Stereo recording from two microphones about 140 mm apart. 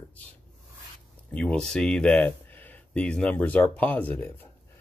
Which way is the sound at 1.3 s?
10° left (ahead or behind).